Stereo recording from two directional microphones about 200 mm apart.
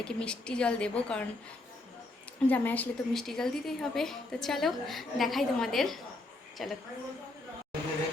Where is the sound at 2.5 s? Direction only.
10° left (ahead or behind).